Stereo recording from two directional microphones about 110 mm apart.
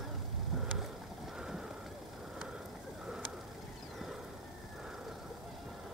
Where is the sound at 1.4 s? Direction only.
5° right (ahead or behind).